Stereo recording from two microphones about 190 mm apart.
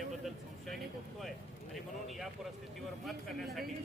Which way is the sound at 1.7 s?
Centre (ahead or behind).